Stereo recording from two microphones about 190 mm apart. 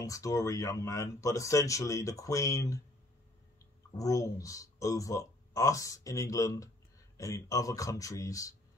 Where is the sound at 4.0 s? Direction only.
15° left (ahead or behind).